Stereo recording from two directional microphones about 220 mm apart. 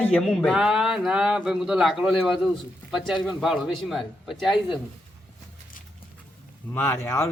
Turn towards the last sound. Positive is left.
turn(degrees=10)  # may be behind; listen again after turning